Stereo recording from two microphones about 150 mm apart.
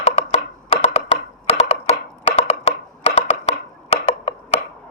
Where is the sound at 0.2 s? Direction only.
45° left (ahead or behind).